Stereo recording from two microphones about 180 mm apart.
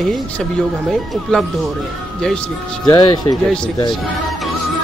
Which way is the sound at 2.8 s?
20° left (ahead or behind).